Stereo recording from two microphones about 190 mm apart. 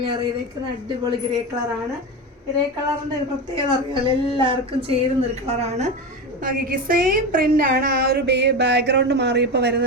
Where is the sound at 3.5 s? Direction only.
30° right (ahead or behind).